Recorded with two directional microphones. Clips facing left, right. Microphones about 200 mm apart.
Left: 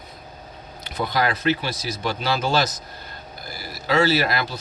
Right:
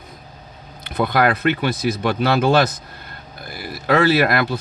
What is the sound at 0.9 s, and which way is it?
Speech, 60° right (ahead or behind).